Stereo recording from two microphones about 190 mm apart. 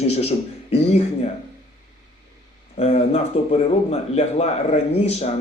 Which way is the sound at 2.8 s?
35° left (ahead or behind).